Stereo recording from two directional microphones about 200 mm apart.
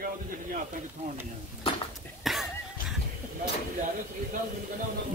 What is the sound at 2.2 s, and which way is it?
Cough, centre (ahead or behind).